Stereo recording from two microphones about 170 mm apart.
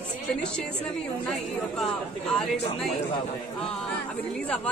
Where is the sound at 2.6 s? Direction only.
35° left (ahead or behind).